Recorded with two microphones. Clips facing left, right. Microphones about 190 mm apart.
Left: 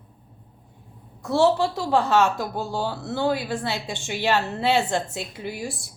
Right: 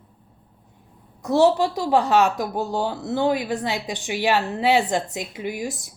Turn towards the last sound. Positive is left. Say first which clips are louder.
# right 3 dB
turn(degrees=-20)  # may be behind; listen again after turning